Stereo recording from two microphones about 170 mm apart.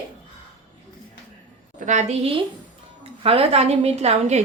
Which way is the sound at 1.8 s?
45° right (ahead or behind).